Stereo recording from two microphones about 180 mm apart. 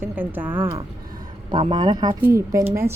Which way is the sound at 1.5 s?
25° right (ahead or behind).